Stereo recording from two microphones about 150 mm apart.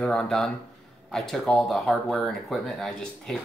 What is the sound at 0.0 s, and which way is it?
Speech, 5° left (ahead or behind).